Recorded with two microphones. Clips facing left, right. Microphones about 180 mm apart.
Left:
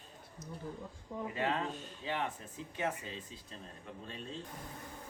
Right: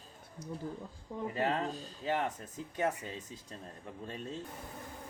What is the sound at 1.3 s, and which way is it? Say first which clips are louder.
Speech: right 2 dB; 40° right (ahead or behind).